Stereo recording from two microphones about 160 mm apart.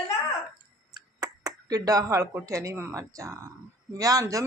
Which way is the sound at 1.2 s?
20° right (ahead or behind).